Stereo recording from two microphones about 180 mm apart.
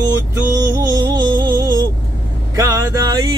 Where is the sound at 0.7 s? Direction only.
20° right (ahead or behind).